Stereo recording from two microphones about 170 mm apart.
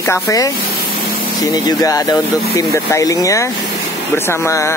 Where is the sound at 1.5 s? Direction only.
20° left (ahead or behind).